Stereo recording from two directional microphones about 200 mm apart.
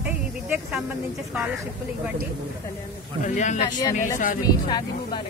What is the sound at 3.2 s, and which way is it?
Speech, 35° left (ahead or behind).